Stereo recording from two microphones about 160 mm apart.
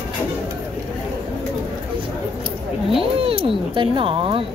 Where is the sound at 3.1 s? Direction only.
35° right (ahead or behind).